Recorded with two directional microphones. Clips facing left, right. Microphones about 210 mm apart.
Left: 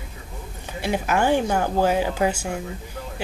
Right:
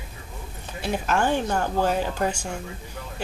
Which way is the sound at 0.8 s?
10° left (ahead or behind).